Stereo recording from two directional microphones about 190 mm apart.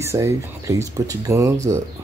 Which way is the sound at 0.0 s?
15° right (ahead or behind).